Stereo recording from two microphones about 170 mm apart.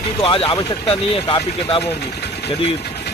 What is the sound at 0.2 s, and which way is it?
Speech, 30° left (ahead or behind).